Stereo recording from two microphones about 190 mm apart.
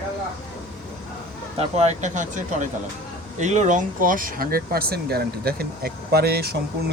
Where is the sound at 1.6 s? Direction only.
35° right (ahead or behind).